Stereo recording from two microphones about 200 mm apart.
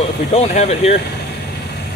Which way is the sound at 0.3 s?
30° left (ahead or behind).